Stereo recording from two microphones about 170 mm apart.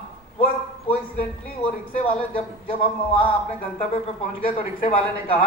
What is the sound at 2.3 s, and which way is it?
A man's voice, 35° left (ahead or behind).